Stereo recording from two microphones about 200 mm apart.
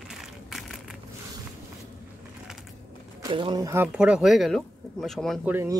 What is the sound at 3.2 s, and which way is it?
Speech, 25° right (ahead or behind).